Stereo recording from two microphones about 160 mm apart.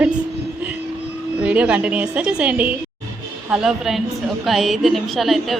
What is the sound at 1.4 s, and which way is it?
A woman's voice, 10° right (ahead or behind).